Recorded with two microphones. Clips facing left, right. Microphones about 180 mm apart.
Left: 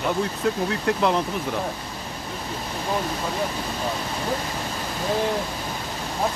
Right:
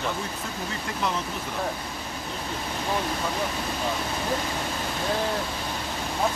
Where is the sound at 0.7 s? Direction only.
60° left (ahead or behind).